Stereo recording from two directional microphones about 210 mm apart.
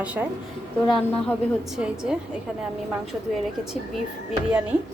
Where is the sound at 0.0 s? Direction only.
5° right (ahead or behind).